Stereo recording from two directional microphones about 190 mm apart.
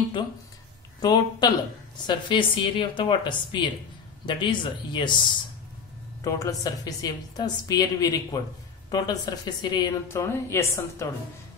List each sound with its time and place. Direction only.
1.0 s a woman's voice: 20° left (ahead or behind)
6.2 s a woman's voice: 15° left (ahead or behind)